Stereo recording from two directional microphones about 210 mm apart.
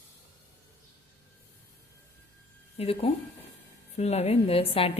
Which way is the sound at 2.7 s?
25° left (ahead or behind).